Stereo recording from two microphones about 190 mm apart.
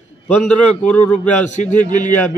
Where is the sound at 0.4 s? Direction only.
5° left (ahead or behind).